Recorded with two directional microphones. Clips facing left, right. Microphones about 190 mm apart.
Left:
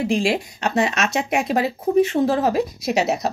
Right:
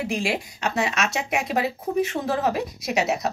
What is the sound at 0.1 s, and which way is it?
Speech, 30° left (ahead or behind).